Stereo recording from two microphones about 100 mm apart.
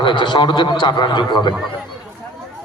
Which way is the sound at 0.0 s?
55° left (ahead or behind).